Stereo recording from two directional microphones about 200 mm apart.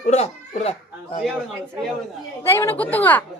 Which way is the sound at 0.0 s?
30° left (ahead or behind).